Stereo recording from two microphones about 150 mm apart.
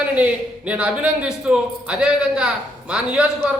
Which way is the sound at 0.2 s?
10° right (ahead or behind).